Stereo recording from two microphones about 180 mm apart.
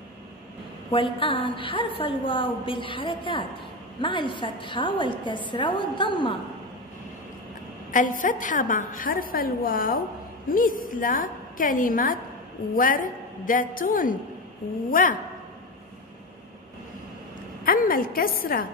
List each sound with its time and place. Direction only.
0.9 s a woman's voice: 30° left (ahead or behind)
7.9 s a woman's voice: 45° left (ahead or behind)
17.6 s a woman's voice: 50° left (ahead or behind)